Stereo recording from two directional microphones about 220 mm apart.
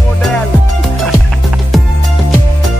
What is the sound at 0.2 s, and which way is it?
Music, 5° left (ahead or behind).